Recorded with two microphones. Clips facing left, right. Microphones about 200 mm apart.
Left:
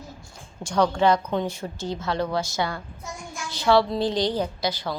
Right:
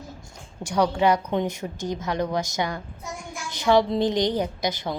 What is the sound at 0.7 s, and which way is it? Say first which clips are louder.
A woman's voice: even; 10° right (ahead or behind).